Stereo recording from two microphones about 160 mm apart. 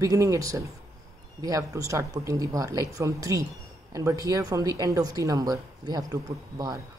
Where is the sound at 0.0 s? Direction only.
20° right (ahead or behind).